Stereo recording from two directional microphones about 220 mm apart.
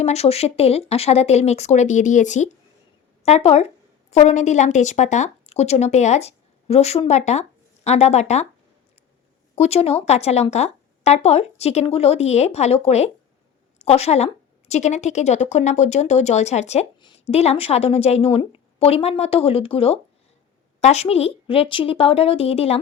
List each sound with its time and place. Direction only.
0.0 s speech: 30° left (ahead or behind)
9.6 s speech: 30° left (ahead or behind)